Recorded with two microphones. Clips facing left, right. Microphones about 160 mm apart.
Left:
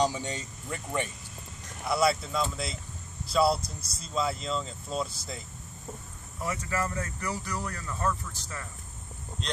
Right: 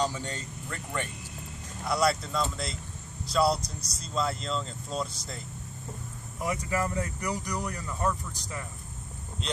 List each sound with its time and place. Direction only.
0.0 s speech: 10° left (ahead or behind)
1.9 s speech: 5° left (ahead or behind)
6.4 s speech: 15° right (ahead or behind)